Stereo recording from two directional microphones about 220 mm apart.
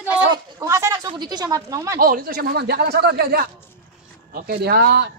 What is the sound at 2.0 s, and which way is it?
Speech, 40° right (ahead or behind).